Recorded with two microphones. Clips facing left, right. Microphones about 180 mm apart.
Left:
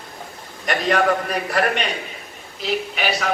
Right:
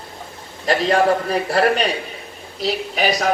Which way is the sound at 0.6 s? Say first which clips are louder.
Right 3 dB; 30° right (ahead or behind).